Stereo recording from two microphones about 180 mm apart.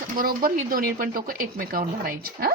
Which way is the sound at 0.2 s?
55° right (ahead or behind).